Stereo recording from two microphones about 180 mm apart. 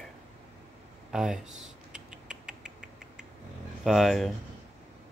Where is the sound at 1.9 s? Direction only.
5° right (ahead or behind).